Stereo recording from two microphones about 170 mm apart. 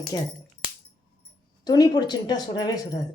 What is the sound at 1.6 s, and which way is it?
Speech, 25° left (ahead or behind).